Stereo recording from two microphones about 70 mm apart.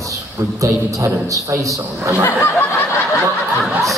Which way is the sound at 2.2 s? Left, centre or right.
Left.